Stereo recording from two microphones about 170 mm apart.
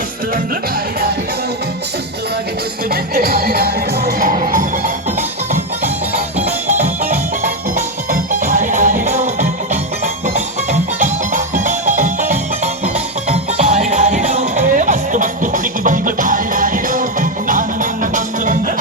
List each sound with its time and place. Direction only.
2.9 s music: 65° right (ahead or behind)
6.8 s music: 55° right (ahead or behind)